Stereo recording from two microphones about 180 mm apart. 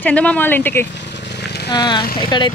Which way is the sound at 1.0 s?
70° left (ahead or behind).